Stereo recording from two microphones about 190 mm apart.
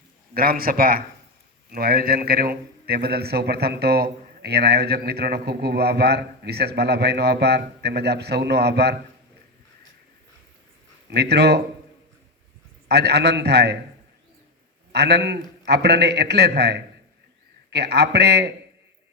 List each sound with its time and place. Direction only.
0.3 s a man's voice: 50° right (ahead or behind)
11.1 s a man's voice: 60° right (ahead or behind)
12.9 s a man's voice: 60° right (ahead or behind)
14.9 s a man's voice: 60° right (ahead or behind)